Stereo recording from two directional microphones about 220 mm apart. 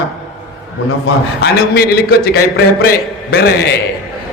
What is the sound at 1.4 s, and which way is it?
Speech, 45° left (ahead or behind).